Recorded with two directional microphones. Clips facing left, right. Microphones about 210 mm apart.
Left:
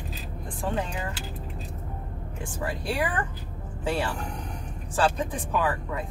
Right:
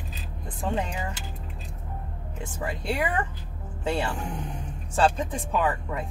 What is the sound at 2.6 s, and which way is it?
Speech, 20° right (ahead or behind).